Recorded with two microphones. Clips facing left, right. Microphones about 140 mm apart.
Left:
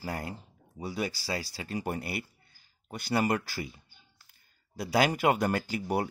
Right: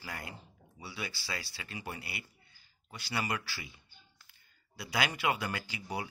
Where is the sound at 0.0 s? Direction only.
35° left (ahead or behind).